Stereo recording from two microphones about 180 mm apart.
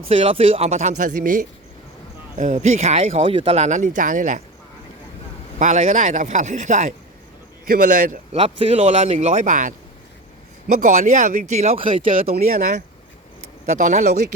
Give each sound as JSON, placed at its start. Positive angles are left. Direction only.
{"t": 0.1, "sound": "speech", "side_deg": -30}
{"t": 5.5, "sound": "speech", "side_deg": -45}
{"t": 8.3, "sound": "speech", "side_deg": -30}
{"t": 13.8, "sound": "speech", "side_deg": -40}